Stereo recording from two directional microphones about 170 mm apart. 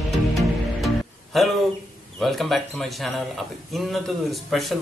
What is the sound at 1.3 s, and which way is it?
A man's voice, centre (ahead or behind).